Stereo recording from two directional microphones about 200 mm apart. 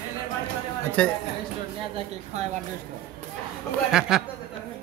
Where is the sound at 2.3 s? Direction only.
35° right (ahead or behind).